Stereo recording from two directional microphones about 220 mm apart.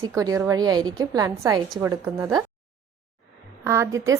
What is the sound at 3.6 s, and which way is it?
Speech, 10° right (ahead or behind).